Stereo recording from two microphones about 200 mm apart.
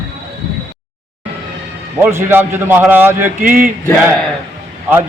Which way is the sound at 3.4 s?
45° right (ahead or behind).